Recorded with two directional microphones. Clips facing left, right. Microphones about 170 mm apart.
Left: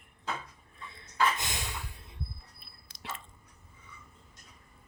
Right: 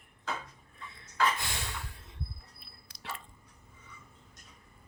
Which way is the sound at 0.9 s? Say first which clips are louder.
Left 1 dB; 20° left (ahead or behind).